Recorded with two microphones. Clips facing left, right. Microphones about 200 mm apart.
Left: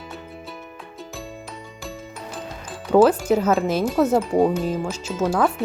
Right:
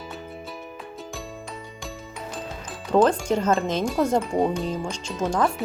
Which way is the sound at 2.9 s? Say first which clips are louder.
Left 4 dB; 5° left (ahead or behind).